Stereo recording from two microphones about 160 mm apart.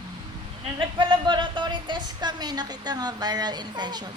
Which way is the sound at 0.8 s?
30° right (ahead or behind).